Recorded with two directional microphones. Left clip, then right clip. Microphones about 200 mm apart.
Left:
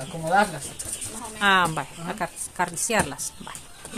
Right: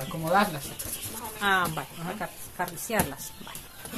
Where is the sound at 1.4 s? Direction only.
35° left (ahead or behind).